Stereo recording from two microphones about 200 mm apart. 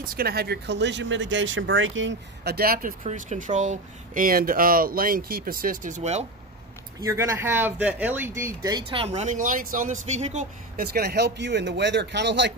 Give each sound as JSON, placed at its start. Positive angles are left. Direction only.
{"t": 0.0, "sound": "speech", "side_deg": -50}
{"t": 3.0, "sound": "speech", "side_deg": -35}
{"t": 7.0, "sound": "speech", "side_deg": -15}
{"t": 10.9, "sound": "speech", "side_deg": -55}